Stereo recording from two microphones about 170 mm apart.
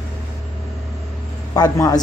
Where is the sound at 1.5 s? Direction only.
20° left (ahead or behind).